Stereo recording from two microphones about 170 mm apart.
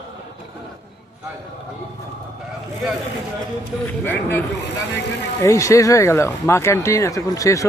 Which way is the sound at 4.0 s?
10° left (ahead or behind).